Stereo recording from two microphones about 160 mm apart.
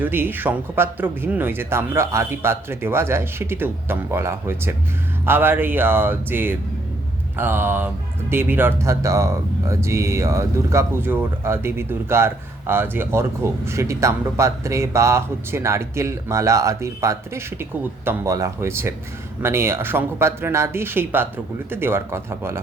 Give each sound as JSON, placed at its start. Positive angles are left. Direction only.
{"t": 0.0, "sound": "speech", "side_deg": -15}